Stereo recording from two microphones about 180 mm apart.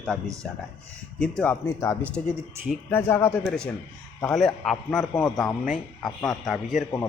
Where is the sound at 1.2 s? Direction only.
5° left (ahead or behind).